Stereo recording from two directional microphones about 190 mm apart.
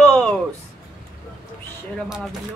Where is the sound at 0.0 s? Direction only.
5° left (ahead or behind).